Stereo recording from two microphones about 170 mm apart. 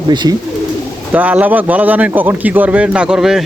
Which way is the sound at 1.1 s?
10° right (ahead or behind).